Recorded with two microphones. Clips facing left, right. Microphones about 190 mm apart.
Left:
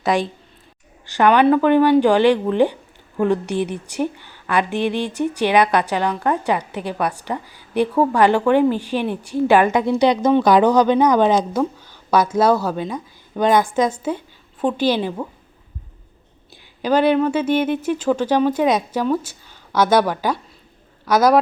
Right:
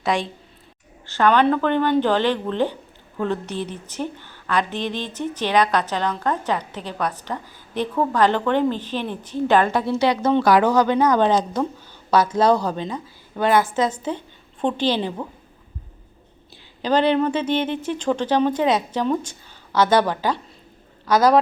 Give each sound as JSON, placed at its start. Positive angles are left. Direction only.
{"t": 0.0, "sound": "a woman's voice", "side_deg": 0}
{"t": 1.0, "sound": "a woman's voice", "side_deg": 15}
{"t": 16.8, "sound": "a woman's voice", "side_deg": 10}